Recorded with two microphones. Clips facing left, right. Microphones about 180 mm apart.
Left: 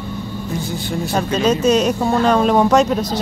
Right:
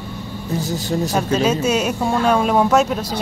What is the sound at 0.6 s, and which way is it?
Speech, 40° right (ahead or behind).